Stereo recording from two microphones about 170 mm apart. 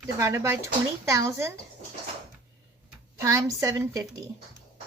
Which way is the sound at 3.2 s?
20° right (ahead or behind).